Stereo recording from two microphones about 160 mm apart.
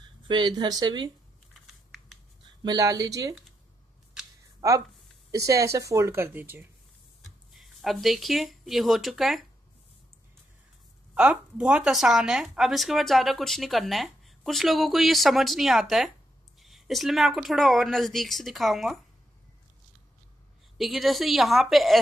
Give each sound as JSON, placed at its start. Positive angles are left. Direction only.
{"t": 0.3, "sound": "speech", "side_deg": -30}
{"t": 2.6, "sound": "speech", "side_deg": -25}
{"t": 4.6, "sound": "speech", "side_deg": -20}
{"t": 7.5, "sound": "speech", "side_deg": 0}
{"t": 11.1, "sound": "speech", "side_deg": -5}
{"t": 20.7, "sound": "speech", "side_deg": 0}